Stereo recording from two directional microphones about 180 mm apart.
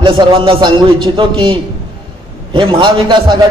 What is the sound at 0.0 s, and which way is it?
A man's voice, 25° right (ahead or behind).